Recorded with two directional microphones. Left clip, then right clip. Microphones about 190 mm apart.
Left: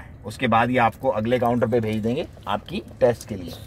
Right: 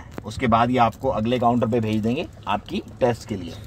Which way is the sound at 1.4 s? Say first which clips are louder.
Even; 10° left (ahead or behind).